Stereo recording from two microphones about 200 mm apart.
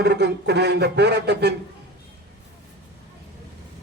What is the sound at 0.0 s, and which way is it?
A man's voice, 55° right (ahead or behind).